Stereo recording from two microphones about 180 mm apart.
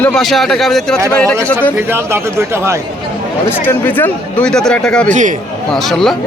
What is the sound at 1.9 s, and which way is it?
Speech, 15° right (ahead or behind).